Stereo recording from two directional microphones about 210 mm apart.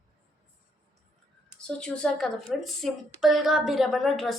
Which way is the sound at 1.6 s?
5° left (ahead or behind).